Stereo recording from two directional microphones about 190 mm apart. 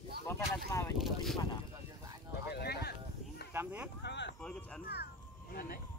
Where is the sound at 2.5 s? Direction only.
55° left (ahead or behind).